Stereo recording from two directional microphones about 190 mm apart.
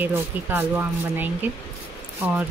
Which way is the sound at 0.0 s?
10° right (ahead or behind).